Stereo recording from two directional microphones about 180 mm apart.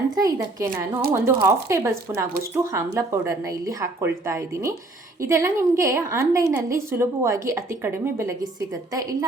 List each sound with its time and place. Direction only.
0.2 s speech: 20° right (ahead or behind)